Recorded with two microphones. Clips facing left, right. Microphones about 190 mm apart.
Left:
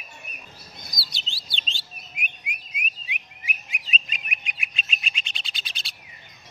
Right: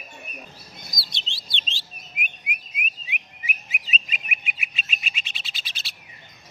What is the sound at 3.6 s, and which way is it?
Bird, 5° right (ahead or behind).